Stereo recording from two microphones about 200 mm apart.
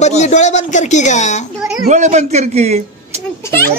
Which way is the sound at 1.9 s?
35° right (ahead or behind).